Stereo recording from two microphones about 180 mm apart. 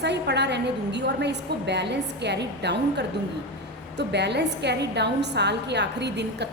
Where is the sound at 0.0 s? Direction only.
70° right (ahead or behind).